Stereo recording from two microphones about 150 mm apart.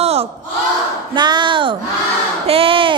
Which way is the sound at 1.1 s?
30° right (ahead or behind).